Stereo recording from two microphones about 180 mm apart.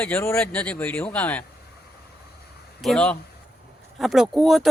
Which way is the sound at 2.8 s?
5° left (ahead or behind).